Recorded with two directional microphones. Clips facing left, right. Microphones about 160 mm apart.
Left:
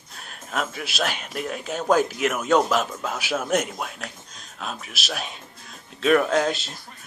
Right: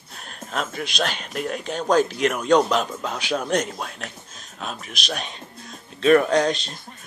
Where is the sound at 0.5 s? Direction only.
5° left (ahead or behind).